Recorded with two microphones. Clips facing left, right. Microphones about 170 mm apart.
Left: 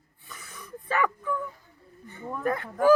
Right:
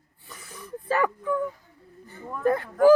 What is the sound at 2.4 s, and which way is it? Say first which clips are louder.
Speech: right 5 dB; 30° right (ahead or behind).